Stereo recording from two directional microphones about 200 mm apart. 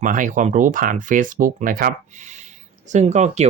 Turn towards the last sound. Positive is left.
turn(degrees=-35)  # may be behind; listen again after turning